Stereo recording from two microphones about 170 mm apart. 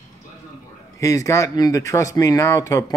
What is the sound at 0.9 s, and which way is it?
Speech, 20° left (ahead or behind).